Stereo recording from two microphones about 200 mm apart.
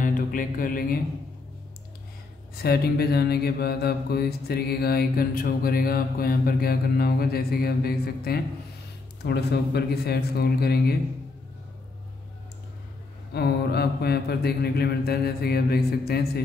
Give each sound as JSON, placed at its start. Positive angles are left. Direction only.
{"t": 0.0, "sound": "speech", "side_deg": 45}
{"t": 2.5, "sound": "mantra", "side_deg": 50}
{"t": 13.3, "sound": "mantra", "side_deg": 55}